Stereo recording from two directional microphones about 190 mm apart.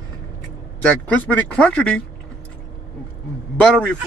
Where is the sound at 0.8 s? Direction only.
10° left (ahead or behind).